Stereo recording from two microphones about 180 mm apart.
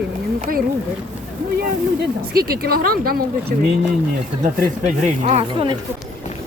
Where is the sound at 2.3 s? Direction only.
55° right (ahead or behind).